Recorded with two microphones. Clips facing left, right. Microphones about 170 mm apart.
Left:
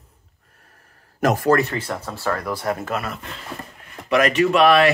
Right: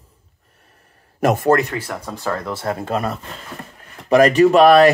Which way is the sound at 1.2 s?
25° right (ahead or behind).